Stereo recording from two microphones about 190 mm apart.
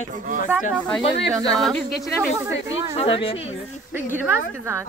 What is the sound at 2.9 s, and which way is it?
Speech, 30° left (ahead or behind).